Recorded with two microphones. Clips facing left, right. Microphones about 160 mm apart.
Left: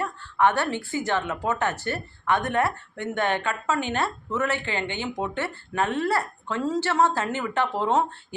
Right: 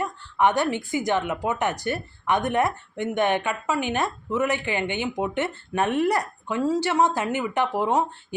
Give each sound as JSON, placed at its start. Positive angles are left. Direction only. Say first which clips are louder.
{"t": 0.0, "sound": "a woman's voice", "louder": "even", "side_deg": -15}